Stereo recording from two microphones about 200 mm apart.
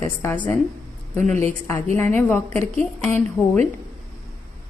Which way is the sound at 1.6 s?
10° left (ahead or behind).